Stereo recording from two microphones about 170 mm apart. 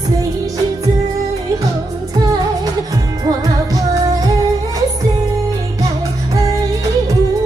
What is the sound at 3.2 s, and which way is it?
Music, 20° right (ahead or behind).